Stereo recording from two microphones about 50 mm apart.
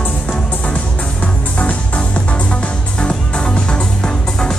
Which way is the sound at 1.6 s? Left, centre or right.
Left.